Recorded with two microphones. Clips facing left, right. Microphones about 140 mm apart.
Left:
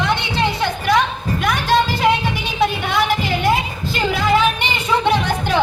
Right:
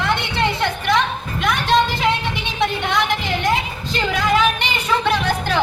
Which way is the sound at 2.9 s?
5° left (ahead or behind).